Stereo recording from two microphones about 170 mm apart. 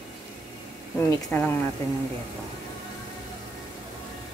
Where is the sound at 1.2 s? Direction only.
10° left (ahead or behind).